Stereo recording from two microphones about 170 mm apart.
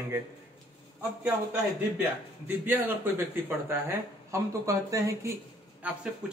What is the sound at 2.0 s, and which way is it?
A man's voice, 10° right (ahead or behind).